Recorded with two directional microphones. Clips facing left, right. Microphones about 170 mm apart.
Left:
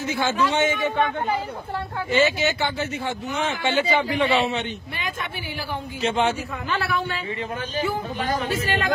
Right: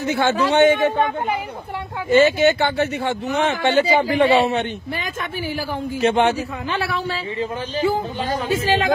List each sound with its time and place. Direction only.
0.0 s speech: 65° right (ahead or behind)
2.0 s a man's voice: 50° right (ahead or behind)
5.9 s speech: 60° right (ahead or behind)
6.7 s speech: 30° right (ahead or behind)